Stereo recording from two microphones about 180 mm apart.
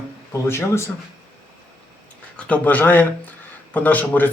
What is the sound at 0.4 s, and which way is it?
Speech, 15° left (ahead or behind).